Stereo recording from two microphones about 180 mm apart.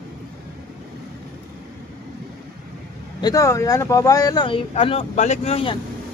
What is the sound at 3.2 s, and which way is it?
Speech, 15° left (ahead or behind).